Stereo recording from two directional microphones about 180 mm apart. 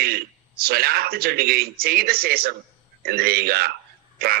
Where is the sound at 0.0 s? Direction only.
60° right (ahead or behind).